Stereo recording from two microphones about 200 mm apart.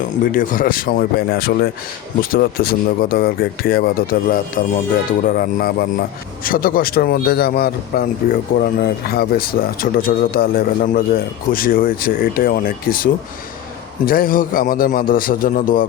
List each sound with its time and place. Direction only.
0.3 s a man's voice: 45° left (ahead or behind)